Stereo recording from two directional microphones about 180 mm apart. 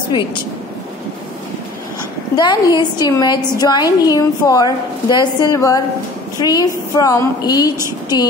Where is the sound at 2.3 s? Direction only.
25° left (ahead or behind).